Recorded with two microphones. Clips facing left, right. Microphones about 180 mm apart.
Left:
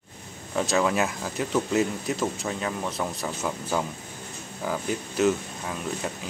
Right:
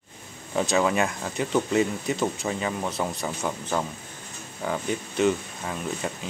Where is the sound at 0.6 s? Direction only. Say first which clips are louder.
Right 1 dB; centre (ahead or behind).